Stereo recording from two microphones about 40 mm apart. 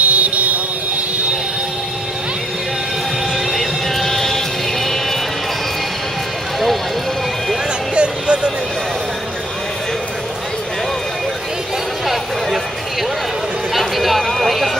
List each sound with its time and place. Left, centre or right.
0.0 s vehicle: right
3.5 s vehicle: centre
7.9 s music: right
13.7 s a sound: centre